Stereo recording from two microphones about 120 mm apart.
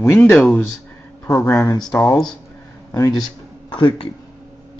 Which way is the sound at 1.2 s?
20° left (ahead or behind).